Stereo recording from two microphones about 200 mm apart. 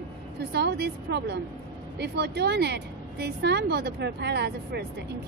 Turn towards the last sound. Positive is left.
turn(degrees=-55)  # may be behind; listen again after turning